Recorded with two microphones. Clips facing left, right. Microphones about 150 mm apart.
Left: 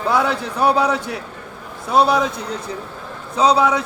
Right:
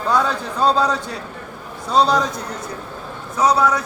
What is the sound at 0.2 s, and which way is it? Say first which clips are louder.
A man's voice: left 1 dB; 65° left (ahead or behind).